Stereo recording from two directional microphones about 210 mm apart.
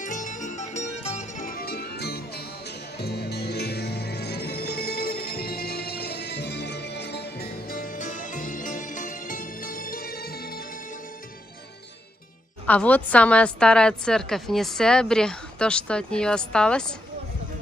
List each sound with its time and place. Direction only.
0.0 s music: 40° left (ahead or behind)
12.6 s a woman's voice: 5° left (ahead or behind)